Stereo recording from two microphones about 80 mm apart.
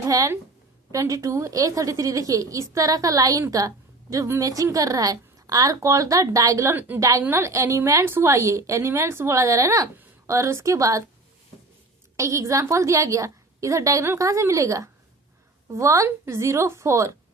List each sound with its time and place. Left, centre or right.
0.1 s a woman's voice: right
6.7 s a woman's voice: right
8.3 s a woman's voice: right
12.1 s a woman's voice: right